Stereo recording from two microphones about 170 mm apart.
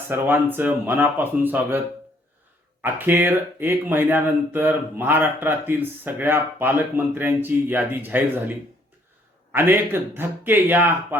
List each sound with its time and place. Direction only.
0.1 s speech: 10° right (ahead or behind)
2.8 s speech: 10° right (ahead or behind)